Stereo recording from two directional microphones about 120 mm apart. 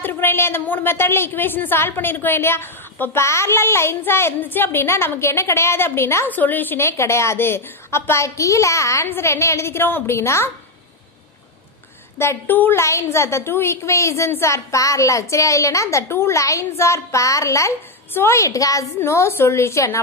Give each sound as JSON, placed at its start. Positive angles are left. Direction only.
{"t": 0.0, "sound": "a woman's voice", "side_deg": 20}
{"t": 12.2, "sound": "a woman's voice", "side_deg": 20}